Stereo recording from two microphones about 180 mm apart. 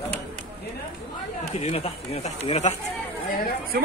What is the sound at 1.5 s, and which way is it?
Speech, 35° left (ahead or behind).